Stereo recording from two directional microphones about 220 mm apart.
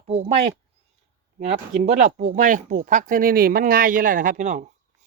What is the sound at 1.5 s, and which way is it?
Speech, 30° right (ahead or behind).